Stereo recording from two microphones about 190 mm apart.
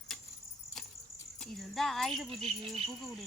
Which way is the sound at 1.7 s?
Centre (ahead or behind).